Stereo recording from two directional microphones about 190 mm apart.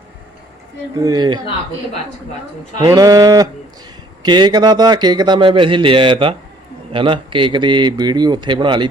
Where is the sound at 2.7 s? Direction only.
20° right (ahead or behind).